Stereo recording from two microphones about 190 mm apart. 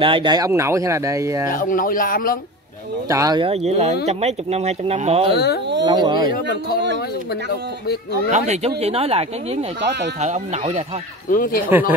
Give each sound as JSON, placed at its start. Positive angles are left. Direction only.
{"t": 0.0, "sound": "speech", "side_deg": -25}
{"t": 1.5, "sound": "speech", "side_deg": 45}
{"t": 3.1, "sound": "speech", "side_deg": -20}
{"t": 3.6, "sound": "speech", "side_deg": -35}
{"t": 5.3, "sound": "speech", "side_deg": 60}
{"t": 5.9, "sound": "speech", "side_deg": -25}
{"t": 8.1, "sound": "speech", "side_deg": -40}
{"t": 11.2, "sound": "speech", "side_deg": 50}